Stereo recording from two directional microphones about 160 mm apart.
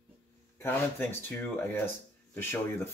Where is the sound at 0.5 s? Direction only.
15° left (ahead or behind).